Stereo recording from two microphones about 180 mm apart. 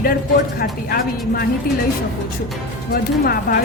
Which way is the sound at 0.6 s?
60° left (ahead or behind).